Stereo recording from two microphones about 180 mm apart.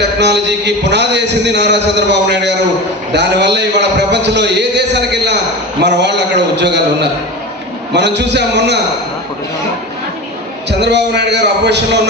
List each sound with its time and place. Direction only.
0.0 s a man's voice: 75° right (ahead or behind)
10.7 s a man's voice: 70° right (ahead or behind)